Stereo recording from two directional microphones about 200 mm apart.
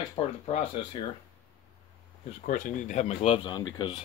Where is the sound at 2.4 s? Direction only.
40° left (ahead or behind).